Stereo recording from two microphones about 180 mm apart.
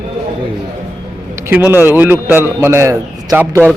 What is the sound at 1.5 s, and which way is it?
A man's voice, 10° right (ahead or behind).